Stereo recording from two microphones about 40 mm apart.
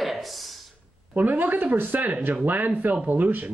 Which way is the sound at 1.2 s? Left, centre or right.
Right.